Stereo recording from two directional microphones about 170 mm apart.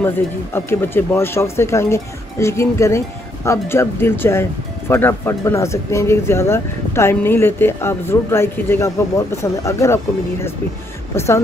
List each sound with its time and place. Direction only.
0.0 s speech: 15° left (ahead or behind)
11.1 s speech: 15° left (ahead or behind)